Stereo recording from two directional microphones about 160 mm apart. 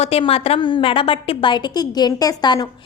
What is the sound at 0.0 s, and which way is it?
A woman's voice, 35° left (ahead or behind).